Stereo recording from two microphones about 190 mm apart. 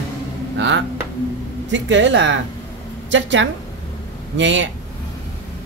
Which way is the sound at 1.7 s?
75° right (ahead or behind).